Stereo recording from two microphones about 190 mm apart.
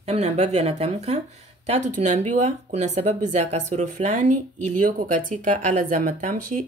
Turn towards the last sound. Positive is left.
turn(degrees=-40)  # may be behind; listen again after turning